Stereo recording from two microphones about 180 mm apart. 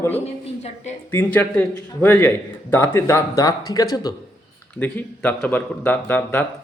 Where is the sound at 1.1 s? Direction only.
10° left (ahead or behind).